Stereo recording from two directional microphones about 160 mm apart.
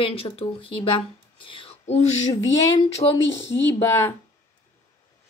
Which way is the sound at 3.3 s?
15° left (ahead or behind).